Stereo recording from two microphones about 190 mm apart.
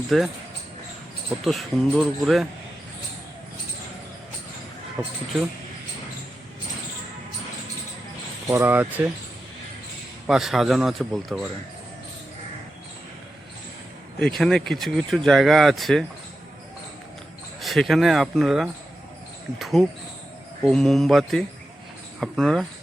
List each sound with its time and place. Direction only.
0.1 s speech: centre (ahead or behind)
1.5 s speech: centre (ahead or behind)
5.0 s speech: 10° right (ahead or behind)
8.4 s speech: 15° right (ahead or behind)
10.2 s speech: centre (ahead or behind)
14.2 s speech: centre (ahead or behind)
17.6 s speech: centre (ahead or behind)